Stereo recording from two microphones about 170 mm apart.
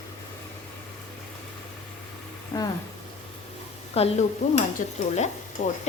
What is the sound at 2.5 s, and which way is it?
Speech, 20° left (ahead or behind).